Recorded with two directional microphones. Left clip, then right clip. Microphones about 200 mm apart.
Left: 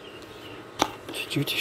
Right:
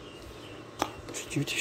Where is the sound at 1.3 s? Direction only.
5° left (ahead or behind).